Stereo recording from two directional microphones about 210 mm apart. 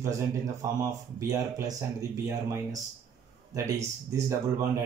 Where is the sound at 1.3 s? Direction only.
15° right (ahead or behind).